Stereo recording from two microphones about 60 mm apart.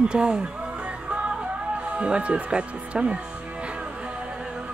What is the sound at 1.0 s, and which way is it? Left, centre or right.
Music, centre.